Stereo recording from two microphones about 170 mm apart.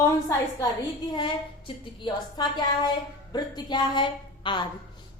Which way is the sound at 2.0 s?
25° left (ahead or behind).